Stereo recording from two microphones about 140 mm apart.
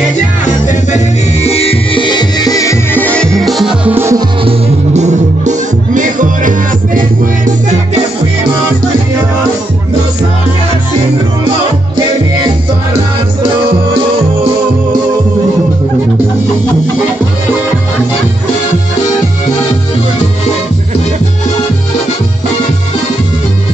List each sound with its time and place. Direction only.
0.5 s music: 55° left (ahead or behind); by 3.9 s centre (ahead or behind)
3.9 s music: 20° right (ahead or behind)
4.5 s music: 55° right (ahead or behind); by 7.5 s 75° right (ahead or behind)